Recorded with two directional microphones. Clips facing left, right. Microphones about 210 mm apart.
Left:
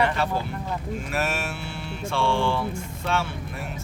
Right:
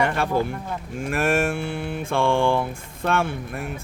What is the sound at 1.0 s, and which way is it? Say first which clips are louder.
Mantra: right 10 dB; 50° right (ahead or behind).